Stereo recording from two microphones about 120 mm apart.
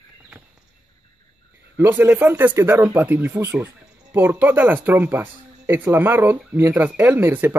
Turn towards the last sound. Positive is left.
turn(degrees=-15)  # may be behind; listen again after turning